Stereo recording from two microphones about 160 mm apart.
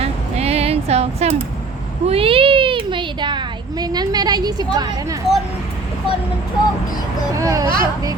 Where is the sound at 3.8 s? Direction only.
25° right (ahead or behind).